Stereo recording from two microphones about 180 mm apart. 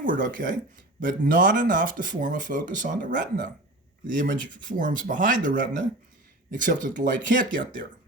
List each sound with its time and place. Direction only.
0.0 s speech: 50° right (ahead or behind)